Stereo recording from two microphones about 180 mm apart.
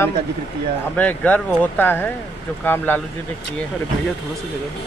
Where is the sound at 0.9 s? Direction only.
10° left (ahead or behind).